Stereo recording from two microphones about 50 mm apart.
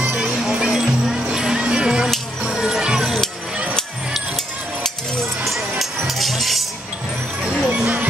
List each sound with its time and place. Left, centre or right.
0.0 s music: centre
5.4 s music: centre
7.7 s music: right